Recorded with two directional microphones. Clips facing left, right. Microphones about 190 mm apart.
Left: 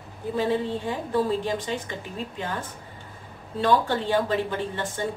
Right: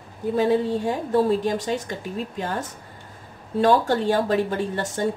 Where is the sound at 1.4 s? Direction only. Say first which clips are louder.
Right 4 dB; 45° right (ahead or behind).